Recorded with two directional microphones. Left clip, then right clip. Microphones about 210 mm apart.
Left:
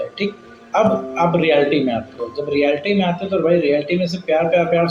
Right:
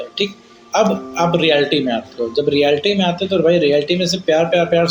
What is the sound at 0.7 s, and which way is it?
Speech, 50° right (ahead or behind).